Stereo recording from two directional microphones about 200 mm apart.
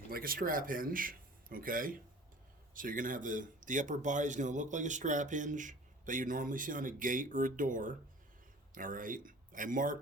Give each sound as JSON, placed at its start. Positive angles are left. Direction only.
{"t": 0.1, "sound": "speech", "side_deg": -45}